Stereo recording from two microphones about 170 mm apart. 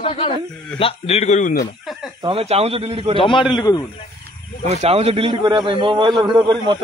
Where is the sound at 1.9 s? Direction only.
Centre (ahead or behind).